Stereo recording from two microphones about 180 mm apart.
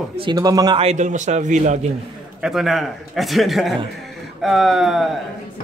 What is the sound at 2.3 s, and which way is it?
A man's voice, centre (ahead or behind).